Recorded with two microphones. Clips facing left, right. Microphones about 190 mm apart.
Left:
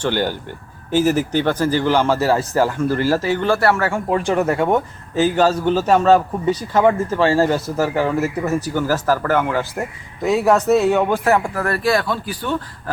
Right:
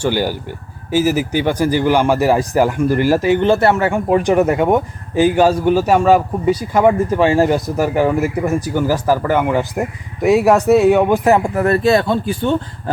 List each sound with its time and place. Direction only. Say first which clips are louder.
0.0 s speech: right 2 dB; 10° right (ahead or behind)